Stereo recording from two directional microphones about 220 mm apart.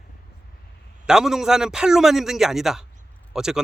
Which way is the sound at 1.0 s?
5° right (ahead or behind).